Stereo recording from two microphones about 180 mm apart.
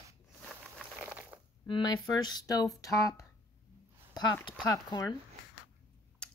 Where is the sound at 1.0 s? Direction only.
10° right (ahead or behind).